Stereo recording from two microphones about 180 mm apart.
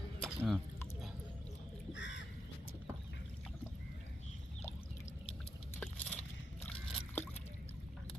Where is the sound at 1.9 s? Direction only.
90° left.